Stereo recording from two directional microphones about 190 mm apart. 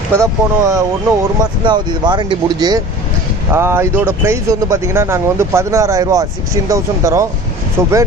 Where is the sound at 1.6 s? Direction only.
25° right (ahead or behind).